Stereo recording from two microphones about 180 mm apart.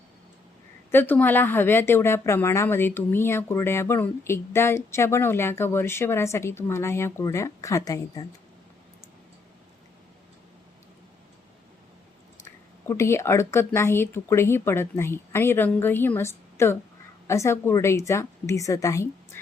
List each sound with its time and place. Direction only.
0.9 s speech: 10° left (ahead or behind)
12.8 s speech: 15° left (ahead or behind)